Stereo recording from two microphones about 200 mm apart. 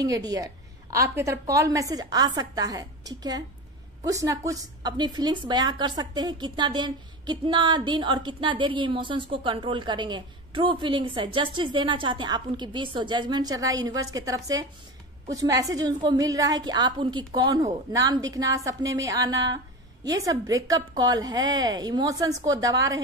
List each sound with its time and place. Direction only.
0.0 s a woman's voice: 20° right (ahead or behind)